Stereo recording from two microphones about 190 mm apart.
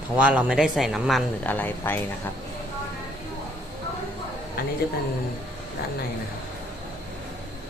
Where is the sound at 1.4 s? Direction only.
10° left (ahead or behind).